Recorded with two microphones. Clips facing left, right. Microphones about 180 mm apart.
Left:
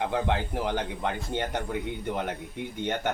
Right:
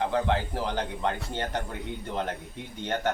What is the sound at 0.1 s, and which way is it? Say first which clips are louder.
Speech: right 1 dB; 15° left (ahead or behind).